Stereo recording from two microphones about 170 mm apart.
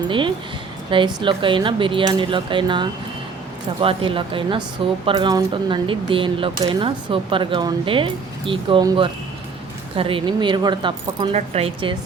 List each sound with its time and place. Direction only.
0.9 s speech: 30° right (ahead or behind)